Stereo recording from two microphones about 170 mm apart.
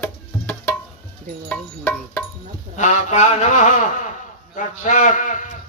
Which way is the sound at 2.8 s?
45° left (ahead or behind).